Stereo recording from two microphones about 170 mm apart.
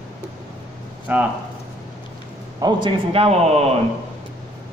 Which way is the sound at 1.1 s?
10° right (ahead or behind).